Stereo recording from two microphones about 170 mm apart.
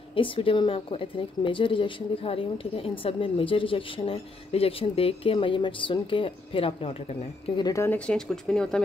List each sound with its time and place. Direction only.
0.1 s a woman's voice: 30° left (ahead or behind); by 8.8 s 5° left (ahead or behind)